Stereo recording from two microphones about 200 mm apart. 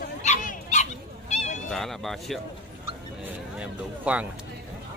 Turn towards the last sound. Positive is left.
turn(degrees=-5)  # may be behind; listen again after turning